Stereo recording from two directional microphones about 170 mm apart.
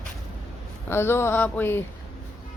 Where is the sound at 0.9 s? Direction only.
15° left (ahead or behind).